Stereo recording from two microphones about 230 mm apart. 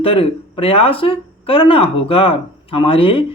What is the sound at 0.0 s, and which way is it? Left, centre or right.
Speech, left.